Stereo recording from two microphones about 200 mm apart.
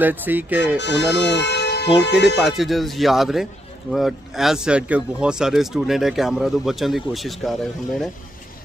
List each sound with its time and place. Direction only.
0.0 s speech: 10° right (ahead or behind)
0.7 s speech: 60° left (ahead or behind)
2.4 s speech: centre (ahead or behind)